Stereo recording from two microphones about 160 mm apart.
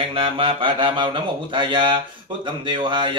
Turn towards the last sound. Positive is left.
turn(degrees=-30)  # may be behind; listen again after turning